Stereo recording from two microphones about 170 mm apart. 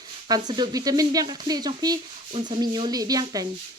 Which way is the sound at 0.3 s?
25° right (ahead or behind).